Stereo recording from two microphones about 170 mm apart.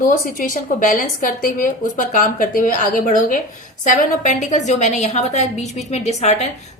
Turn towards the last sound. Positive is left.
turn(degrees=40)  # may be behind; listen again after turning